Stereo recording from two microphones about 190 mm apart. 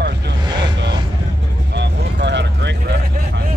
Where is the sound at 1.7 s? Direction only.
65° right (ahead or behind).